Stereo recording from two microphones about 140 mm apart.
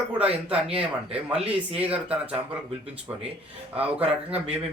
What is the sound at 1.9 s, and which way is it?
Speech, 10° right (ahead or behind).